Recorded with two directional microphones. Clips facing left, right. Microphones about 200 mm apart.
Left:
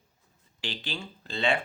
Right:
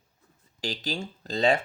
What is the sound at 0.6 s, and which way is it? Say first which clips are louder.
Speech: right 5 dB; 40° right (ahead or behind).